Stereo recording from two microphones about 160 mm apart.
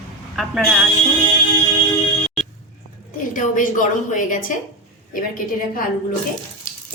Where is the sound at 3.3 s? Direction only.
55° left (ahead or behind).